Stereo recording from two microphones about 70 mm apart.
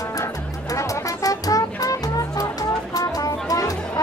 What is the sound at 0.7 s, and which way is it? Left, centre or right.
Music, left.